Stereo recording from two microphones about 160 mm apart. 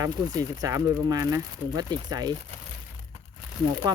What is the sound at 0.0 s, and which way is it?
Speech, 20° right (ahead or behind).